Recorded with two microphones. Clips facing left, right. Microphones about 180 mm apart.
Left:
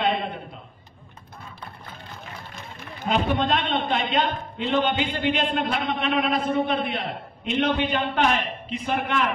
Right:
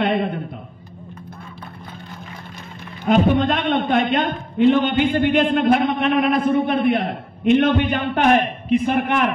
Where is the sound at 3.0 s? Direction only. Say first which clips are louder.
Right 7 dB; 50° right (ahead or behind).